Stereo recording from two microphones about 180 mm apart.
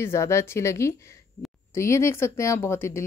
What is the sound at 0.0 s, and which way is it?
Speech, 15° left (ahead or behind).